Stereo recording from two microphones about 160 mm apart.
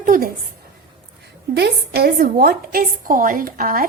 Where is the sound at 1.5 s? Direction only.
85° right.